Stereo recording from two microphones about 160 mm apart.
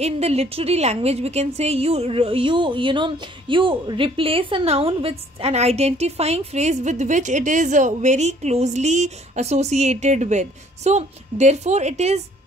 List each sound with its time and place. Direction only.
0.0 s a woman's voice: 40° right (ahead or behind)